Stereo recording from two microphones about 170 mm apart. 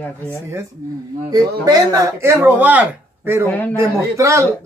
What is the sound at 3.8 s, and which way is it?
Speech, 15° right (ahead or behind).